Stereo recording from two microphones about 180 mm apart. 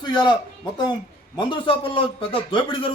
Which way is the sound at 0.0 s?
25° left (ahead or behind).